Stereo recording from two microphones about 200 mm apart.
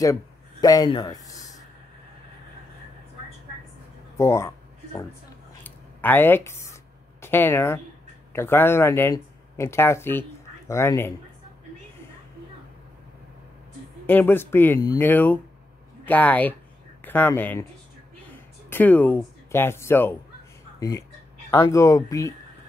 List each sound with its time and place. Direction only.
0.0 s speech: 15° left (ahead or behind)
4.2 s a sound: 15° left (ahead or behind)
6.7 s writing: 10° left (ahead or behind)
8.3 s speech: 10° left (ahead or behind)
14.0 s speech: 10° left (ahead or behind)
18.7 s speech: 10° left (ahead or behind)
21.5 s speech: 15° left (ahead or behind)